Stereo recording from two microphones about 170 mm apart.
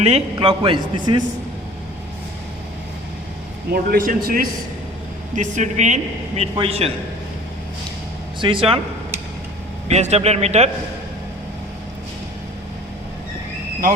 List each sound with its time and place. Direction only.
0.0 s a man's voice: 35° right (ahead or behind)
3.7 s a man's voice: 60° right (ahead or behind)
5.3 s a man's voice: 45° right (ahead or behind)
8.4 s a man's voice: 30° right (ahead or behind)
9.9 s a man's voice: 40° right (ahead or behind)